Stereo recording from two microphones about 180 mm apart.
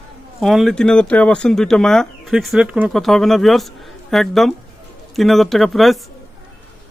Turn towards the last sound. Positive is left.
turn(degrees=0)  # may be behind; listen again after turning